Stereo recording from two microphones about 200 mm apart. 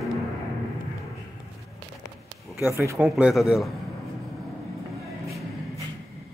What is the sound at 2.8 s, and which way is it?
Speech, 10° right (ahead or behind).